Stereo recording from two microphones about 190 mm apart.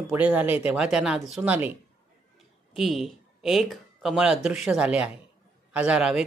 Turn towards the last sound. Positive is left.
turn(degrees=-5)  # may be behind; listen again after turning